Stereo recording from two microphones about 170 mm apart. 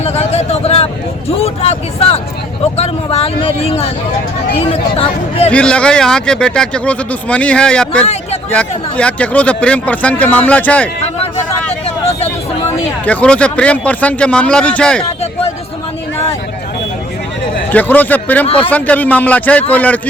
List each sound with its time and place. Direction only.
0.0 s a sound: 35° left (ahead or behind)
1.4 s speech: 35° left (ahead or behind)
5.5 s speech: 5° left (ahead or behind)
8.0 s speech: 40° left (ahead or behind)
8.4 s speech: 5° left (ahead or behind)
13.1 s speech: 10° left (ahead or behind)
17.7 s speech: 10° left (ahead or behind)
18.4 s speech: 35° left (ahead or behind)
18.7 s speech: 10° left (ahead or behind)